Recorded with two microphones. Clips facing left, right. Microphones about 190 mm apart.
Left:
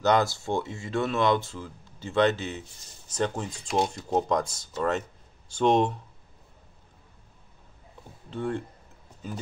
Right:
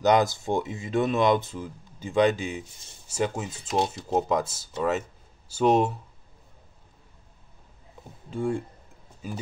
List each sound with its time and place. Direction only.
0.0 s speech: 15° right (ahead or behind)
8.3 s speech: 10° right (ahead or behind)